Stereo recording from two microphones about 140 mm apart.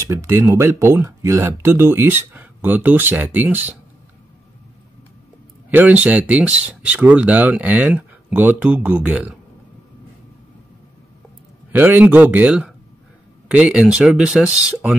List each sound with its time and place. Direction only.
0.0 s speech: 20° right (ahead or behind)
5.7 s speech: 10° right (ahead or behind)
11.7 s speech: 10° right (ahead or behind)